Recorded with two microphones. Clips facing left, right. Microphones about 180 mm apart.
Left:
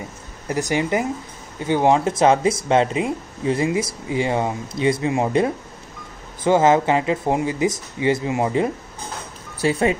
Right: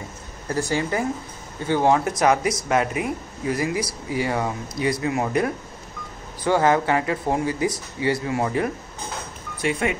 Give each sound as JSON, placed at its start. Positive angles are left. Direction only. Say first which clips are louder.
{"t": 0.5, "sound": "speech", "louder": "left 3 dB", "side_deg": 15}
{"t": 9.6, "sound": "speech", "louder": "left 5 dB", "side_deg": 35}